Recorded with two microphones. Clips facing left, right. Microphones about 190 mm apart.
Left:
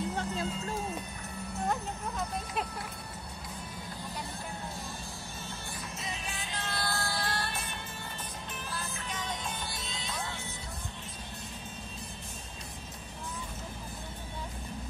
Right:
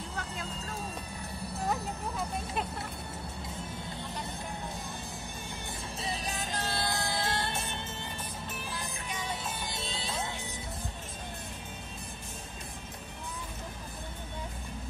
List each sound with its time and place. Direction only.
0.1 s music: 30° left (ahead or behind)
1.7 s music: 5° right (ahead or behind)
5.9 s music: 35° right (ahead or behind)
6.7 s music: 20° right (ahead or behind)
8.6 s music: 10° right (ahead or behind)
9.7 s music: 30° right (ahead or behind)